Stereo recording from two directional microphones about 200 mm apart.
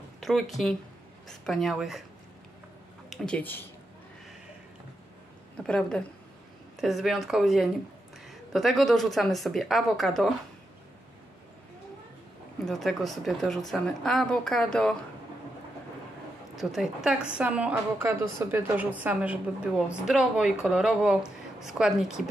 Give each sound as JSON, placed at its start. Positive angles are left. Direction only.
{"t": 0.2, "sound": "a woman's voice", "side_deg": 0}
{"t": 3.1, "sound": "speech", "side_deg": 5}
{"t": 5.7, "sound": "a woman's voice", "side_deg": 5}
{"t": 12.6, "sound": "a woman's voice", "side_deg": 0}
{"t": 16.5, "sound": "a woman's voice", "side_deg": 0}